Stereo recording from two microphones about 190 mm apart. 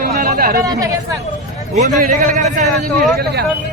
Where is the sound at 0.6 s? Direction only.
20° right (ahead or behind).